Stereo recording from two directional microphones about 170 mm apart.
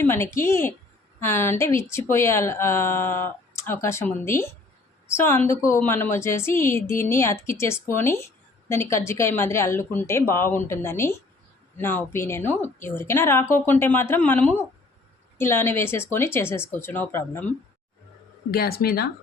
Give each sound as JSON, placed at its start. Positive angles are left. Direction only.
{"t": 0.0, "sound": "a woman's voice", "side_deg": 15}
{"t": 18.5, "sound": "speech", "side_deg": 65}